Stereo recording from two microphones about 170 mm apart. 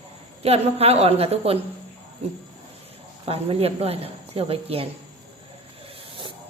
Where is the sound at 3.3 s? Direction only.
35° right (ahead or behind).